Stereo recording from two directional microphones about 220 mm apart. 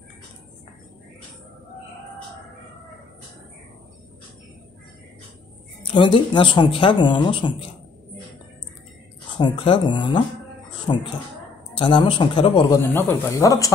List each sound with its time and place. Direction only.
5.8 s speech: 20° left (ahead or behind)
9.3 s speech: 20° left (ahead or behind)